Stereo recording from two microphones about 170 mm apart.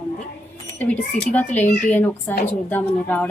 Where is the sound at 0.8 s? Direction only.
10° left (ahead or behind).